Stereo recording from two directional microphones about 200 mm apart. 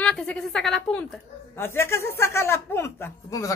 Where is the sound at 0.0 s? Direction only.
5° left (ahead or behind).